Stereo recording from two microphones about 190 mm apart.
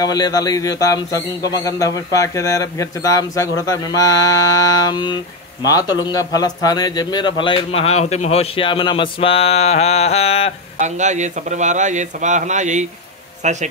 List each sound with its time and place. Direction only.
0.0 s speech: 20° left (ahead or behind)
10.8 s a man's voice: 40° right (ahead or behind)